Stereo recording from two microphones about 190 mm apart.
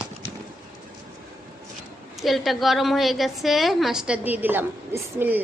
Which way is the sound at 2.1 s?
Centre (ahead or behind).